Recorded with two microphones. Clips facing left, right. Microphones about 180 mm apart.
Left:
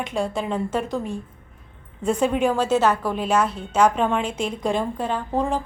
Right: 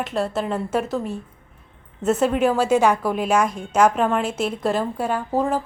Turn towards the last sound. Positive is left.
turn(degrees=-5)  # may be behind; listen again after turning